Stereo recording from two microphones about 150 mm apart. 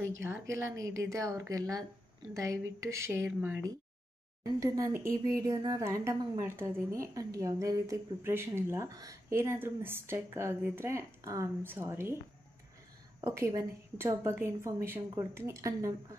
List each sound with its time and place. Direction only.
0.0 s a woman's voice: 15° right (ahead or behind)
13.2 s a woman's voice: 20° right (ahead or behind)